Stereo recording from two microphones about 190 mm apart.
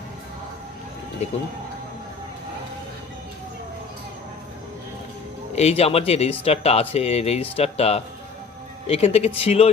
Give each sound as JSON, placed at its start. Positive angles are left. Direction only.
{"t": 5.5, "sound": "speech", "side_deg": 35}